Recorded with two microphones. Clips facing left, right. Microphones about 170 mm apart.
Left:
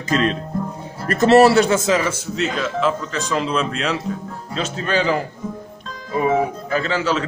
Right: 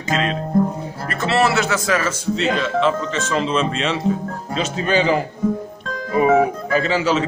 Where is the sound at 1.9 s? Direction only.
20° left (ahead or behind).